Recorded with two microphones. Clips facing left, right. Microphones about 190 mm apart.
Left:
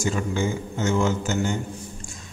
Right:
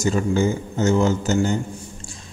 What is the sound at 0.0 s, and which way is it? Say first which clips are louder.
A man's voice: right 5 dB; 40° right (ahead or behind).